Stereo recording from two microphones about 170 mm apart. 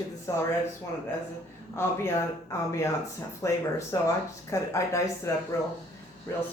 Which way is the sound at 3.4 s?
20° left (ahead or behind).